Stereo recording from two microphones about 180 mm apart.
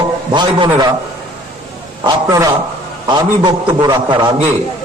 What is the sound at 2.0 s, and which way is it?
A man's voice, 20° right (ahead or behind).